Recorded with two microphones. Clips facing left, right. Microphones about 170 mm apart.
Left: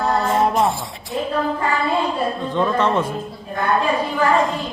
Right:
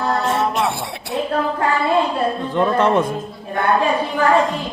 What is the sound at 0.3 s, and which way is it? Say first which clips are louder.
Music: left 2 dB; 75° right (ahead or behind).